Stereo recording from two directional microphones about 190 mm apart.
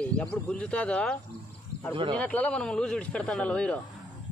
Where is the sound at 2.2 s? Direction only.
5° left (ahead or behind).